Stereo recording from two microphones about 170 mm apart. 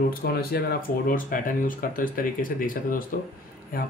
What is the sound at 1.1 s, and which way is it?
Speech, 55° left (ahead or behind).